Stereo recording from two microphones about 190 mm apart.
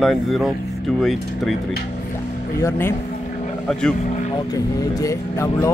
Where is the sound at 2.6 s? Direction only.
15° left (ahead or behind).